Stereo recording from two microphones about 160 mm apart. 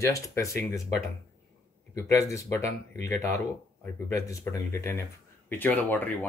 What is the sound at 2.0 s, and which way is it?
Speech, 15° left (ahead or behind).